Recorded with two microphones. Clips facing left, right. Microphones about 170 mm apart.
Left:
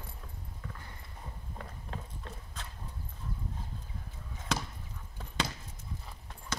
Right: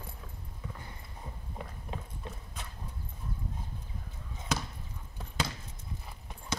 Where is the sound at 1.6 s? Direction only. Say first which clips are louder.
Right 2 dB; 15° right (ahead or behind).